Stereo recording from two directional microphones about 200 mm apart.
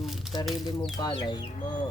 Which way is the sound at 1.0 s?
20° left (ahead or behind).